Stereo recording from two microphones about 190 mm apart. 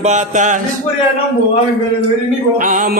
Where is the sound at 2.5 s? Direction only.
45° right (ahead or behind).